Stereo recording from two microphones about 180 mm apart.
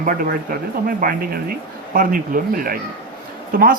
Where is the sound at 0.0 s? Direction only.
50° right (ahead or behind).